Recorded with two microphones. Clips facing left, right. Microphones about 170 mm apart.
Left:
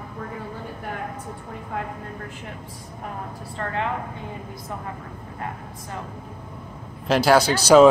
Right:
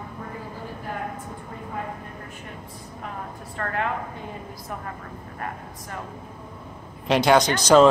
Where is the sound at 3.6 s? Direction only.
20° left (ahead or behind).